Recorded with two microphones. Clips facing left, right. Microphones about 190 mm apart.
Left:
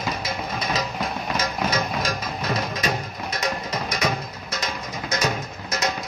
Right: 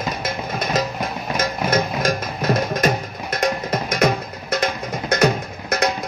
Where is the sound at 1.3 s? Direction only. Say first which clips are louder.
Right 6 dB; 50° right (ahead or behind).